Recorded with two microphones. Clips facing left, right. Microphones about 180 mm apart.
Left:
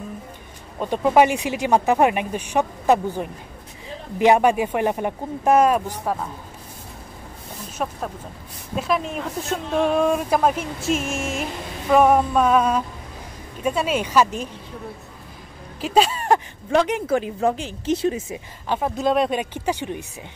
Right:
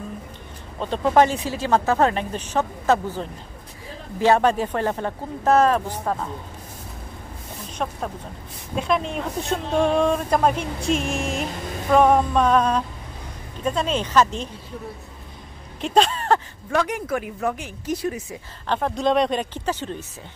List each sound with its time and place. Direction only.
0.7 s speech: 10° left (ahead or behind)
7.7 s speech: 5° left (ahead or behind)
15.8 s a sound: 5° left (ahead or behind)
16.7 s speech: 25° left (ahead or behind)
18.7 s speech: 5° left (ahead or behind)